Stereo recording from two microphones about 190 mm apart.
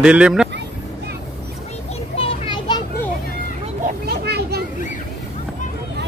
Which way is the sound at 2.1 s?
25° left (ahead or behind).